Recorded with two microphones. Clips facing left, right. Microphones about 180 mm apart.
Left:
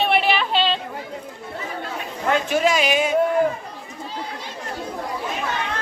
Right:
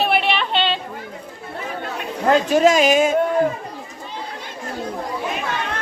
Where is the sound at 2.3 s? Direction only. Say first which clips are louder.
Right 5 dB; 40° right (ahead or behind).